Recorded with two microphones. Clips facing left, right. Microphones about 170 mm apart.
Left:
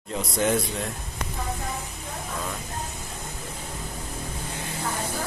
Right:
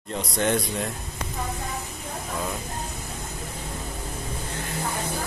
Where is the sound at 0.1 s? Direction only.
Centre (ahead or behind).